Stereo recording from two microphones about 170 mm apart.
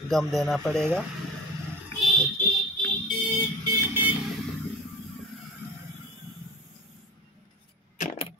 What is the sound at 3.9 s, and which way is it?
Vehicle, 10° right (ahead or behind).